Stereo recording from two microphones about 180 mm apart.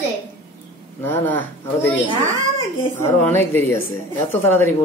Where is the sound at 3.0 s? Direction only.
15° left (ahead or behind).